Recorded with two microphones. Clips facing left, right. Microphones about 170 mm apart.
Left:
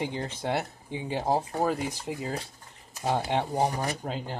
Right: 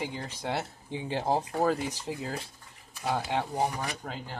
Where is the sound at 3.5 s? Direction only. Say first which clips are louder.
Left 3 dB; 35° left (ahead or behind).